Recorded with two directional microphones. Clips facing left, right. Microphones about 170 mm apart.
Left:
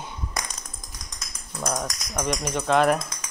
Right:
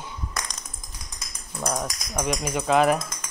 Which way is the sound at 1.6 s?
5° right (ahead or behind).